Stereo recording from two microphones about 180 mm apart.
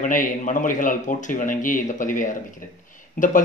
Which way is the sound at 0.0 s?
45° left (ahead or behind).